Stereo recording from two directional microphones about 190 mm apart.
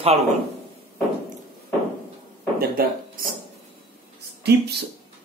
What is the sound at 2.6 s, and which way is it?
Speech, 55° right (ahead or behind).